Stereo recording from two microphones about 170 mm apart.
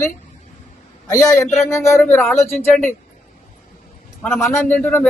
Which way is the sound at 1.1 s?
20° left (ahead or behind).